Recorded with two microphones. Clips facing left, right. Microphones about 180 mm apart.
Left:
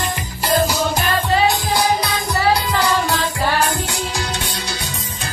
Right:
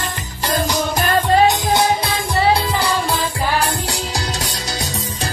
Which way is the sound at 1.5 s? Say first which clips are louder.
Right 2 dB; 25° right (ahead or behind).